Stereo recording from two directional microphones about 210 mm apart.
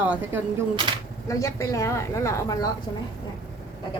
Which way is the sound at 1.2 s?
15° left (ahead or behind).